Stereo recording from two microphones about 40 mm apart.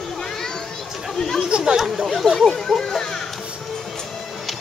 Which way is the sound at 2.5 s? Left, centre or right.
Centre.